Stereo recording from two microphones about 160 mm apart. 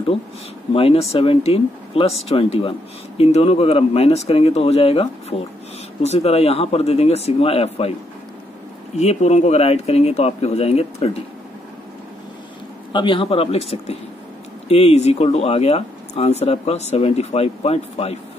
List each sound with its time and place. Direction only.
0.7 s speech: 35° left (ahead or behind)
8.9 s speech: 40° left (ahead or behind)
12.9 s speech: 30° left (ahead or behind)